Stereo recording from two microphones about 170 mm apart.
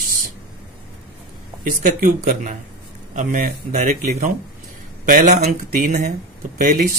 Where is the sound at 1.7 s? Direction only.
55° right (ahead or behind).